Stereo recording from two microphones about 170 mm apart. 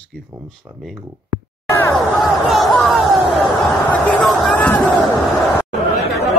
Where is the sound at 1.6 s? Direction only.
15° left (ahead or behind).